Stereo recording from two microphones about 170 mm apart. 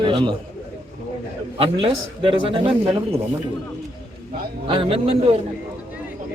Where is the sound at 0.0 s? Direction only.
30° right (ahead or behind).